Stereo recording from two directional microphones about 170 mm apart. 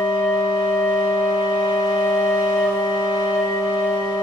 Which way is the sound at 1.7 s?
20° left (ahead or behind).